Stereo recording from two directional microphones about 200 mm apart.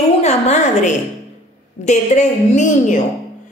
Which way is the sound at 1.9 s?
35° left (ahead or behind).